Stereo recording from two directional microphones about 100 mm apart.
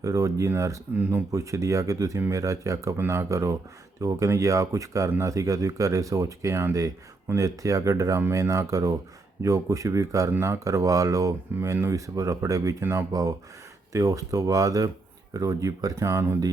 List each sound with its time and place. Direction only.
0.0 s speech: 35° right (ahead or behind)